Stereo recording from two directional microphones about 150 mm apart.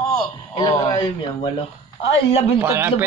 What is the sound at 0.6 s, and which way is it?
Speech, 40° left (ahead or behind).